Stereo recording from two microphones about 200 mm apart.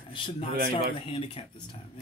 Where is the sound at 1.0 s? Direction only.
30° left (ahead or behind).